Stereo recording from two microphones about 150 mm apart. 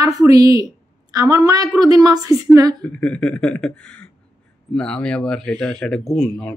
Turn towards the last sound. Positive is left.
turn(degrees=5)  # may be behind; listen again after turning